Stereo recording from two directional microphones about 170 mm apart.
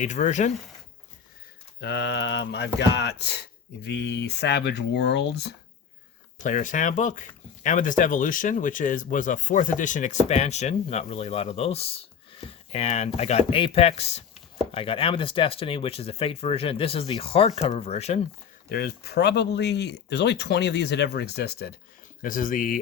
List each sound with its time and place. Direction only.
0.0 s speech: 45° left (ahead or behind)
1.8 s a sound: 85° left
2.7 s speech: 80° left
6.4 s speech: 50° left (ahead or behind)
18.7 s speech: 65° left (ahead or behind)
22.2 s speech: 55° left (ahead or behind)